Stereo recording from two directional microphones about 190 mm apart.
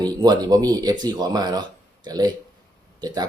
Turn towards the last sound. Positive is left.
turn(degrees=-20)  # may be behind; listen again after turning